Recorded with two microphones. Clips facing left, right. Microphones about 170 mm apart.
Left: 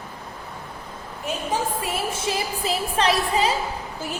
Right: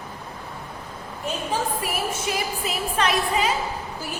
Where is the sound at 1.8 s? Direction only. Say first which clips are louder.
Left 1 dB; 25° left (ahead or behind).